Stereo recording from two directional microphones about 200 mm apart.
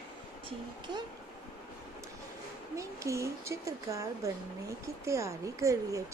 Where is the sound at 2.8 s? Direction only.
15° right (ahead or behind).